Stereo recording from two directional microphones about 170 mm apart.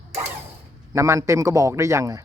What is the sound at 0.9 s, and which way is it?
A man's voice, 20° right (ahead or behind).